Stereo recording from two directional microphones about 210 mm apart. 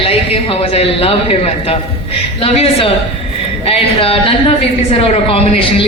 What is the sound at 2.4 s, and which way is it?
A woman's voice, 30° left (ahead or behind).